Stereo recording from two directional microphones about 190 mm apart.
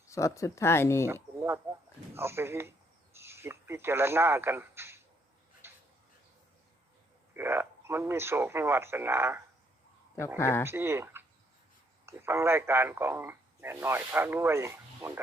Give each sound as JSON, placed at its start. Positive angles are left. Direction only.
{"t": 0.1, "sound": "speech", "side_deg": 15}
{"t": 1.0, "sound": "a sound", "side_deg": -15}
{"t": 2.1, "sound": "speech", "side_deg": -15}
{"t": 5.6, "sound": "a sound", "side_deg": -10}
{"t": 7.3, "sound": "a man's voice", "side_deg": -10}
{"t": 10.3, "sound": "speech", "side_deg": 15}
{"t": 10.7, "sound": "a man's voice", "side_deg": -10}